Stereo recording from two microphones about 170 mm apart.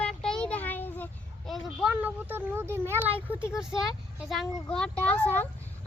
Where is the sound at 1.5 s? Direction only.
5° right (ahead or behind).